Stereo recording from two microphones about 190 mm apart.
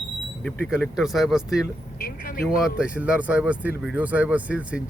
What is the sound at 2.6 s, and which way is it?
Speech, 5° right (ahead or behind).